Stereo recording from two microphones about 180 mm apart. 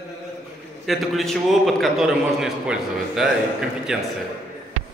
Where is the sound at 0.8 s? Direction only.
Centre (ahead or behind).